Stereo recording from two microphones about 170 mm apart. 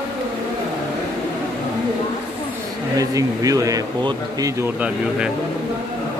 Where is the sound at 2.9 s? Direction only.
20° right (ahead or behind).